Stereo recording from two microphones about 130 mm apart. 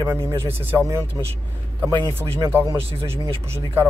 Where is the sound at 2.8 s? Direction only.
50° right (ahead or behind).